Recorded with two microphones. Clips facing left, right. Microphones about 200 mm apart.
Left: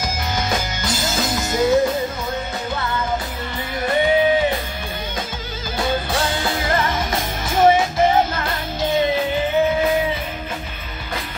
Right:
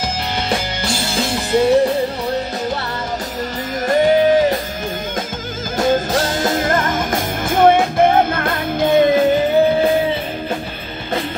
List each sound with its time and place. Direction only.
0.5 s music: 30° right (ahead or behind)
3.8 s music: 40° right (ahead or behind)
5.8 s music: 45° right (ahead or behind)